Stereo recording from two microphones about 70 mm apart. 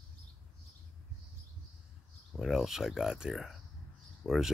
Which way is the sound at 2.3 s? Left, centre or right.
Centre.